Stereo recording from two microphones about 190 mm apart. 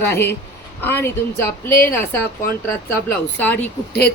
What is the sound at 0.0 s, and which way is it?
Speech, 10° left (ahead or behind).